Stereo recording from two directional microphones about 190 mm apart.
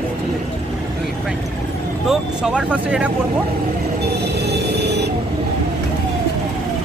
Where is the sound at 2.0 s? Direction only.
5° right (ahead or behind).